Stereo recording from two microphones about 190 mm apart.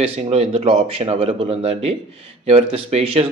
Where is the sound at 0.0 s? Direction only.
30° right (ahead or behind).